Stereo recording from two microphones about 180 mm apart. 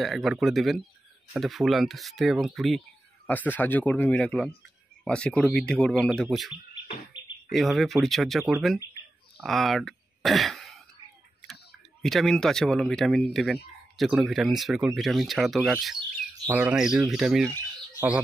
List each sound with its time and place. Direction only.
0.0 s speech: centre (ahead or behind)
12.0 s speech: centre (ahead or behind)